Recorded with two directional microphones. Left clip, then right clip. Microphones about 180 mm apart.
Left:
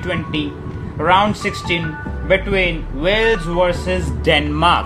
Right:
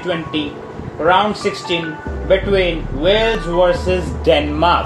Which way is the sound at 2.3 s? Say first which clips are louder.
Right 2 dB; 60° left (ahead or behind).